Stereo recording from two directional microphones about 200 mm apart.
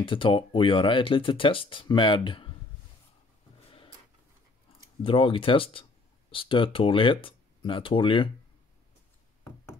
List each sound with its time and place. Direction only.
0.0 s speech: 25° left (ahead or behind)
5.0 s speech: 25° left (ahead or behind)